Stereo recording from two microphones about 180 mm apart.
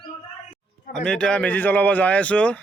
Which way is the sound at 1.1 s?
5° left (ahead or behind).